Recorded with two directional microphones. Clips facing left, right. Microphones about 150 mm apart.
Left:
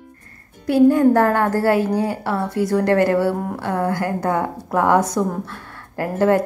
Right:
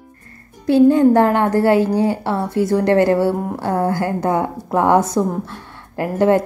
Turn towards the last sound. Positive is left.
turn(degrees=-20)  # may be behind; listen again after turning